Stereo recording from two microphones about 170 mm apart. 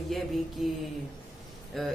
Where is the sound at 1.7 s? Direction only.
Centre (ahead or behind).